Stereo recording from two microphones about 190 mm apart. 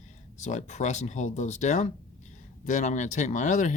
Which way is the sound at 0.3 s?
40° left (ahead or behind).